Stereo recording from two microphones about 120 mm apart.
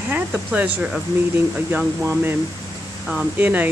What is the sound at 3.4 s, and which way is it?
Speech, 15° right (ahead or behind).